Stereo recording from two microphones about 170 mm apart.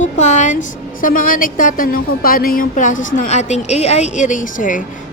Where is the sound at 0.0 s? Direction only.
45° left (ahead or behind).